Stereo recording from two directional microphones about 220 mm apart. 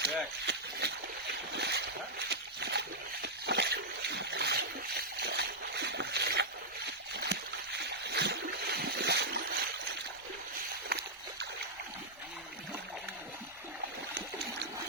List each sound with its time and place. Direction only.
0.0 s speech: 50° right (ahead or behind)
1.5 s splash: 50° right (ahead or behind)
10.9 s a sound: 45° right (ahead or behind)